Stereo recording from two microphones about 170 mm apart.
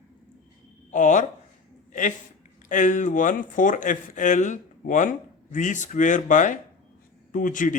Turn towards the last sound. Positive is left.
turn(degrees=50)  # may be behind; listen again after turning